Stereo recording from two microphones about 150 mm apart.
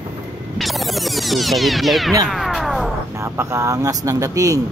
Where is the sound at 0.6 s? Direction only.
Centre (ahead or behind).